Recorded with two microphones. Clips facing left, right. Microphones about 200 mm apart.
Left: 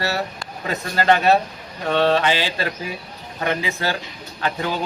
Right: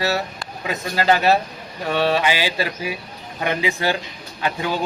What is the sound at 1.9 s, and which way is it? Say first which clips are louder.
Mantra: left 2 dB; 10° right (ahead or behind).